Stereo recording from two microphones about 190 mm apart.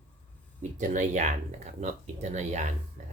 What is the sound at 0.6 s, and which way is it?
Speech, 40° right (ahead or behind).